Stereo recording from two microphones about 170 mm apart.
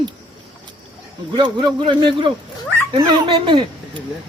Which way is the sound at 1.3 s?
30° right (ahead or behind).